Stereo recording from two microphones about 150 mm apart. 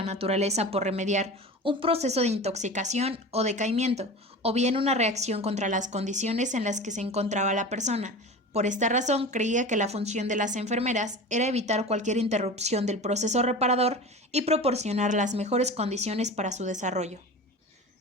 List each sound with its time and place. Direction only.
0.0 s speech: 45° right (ahead or behind)
1.6 s speech: 40° right (ahead or behind)